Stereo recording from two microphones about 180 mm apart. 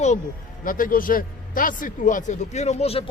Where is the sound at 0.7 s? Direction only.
50° left (ahead or behind).